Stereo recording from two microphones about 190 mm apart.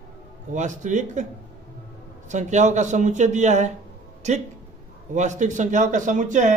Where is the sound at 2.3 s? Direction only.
40° right (ahead or behind).